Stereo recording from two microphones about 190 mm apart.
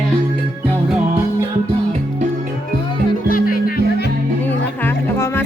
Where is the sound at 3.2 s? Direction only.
50° left (ahead or behind).